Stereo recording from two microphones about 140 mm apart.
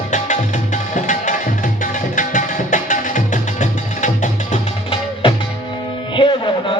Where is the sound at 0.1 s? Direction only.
60° left (ahead or behind).